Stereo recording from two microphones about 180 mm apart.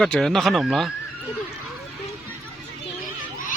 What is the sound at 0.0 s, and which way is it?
Speech, 5° left (ahead or behind).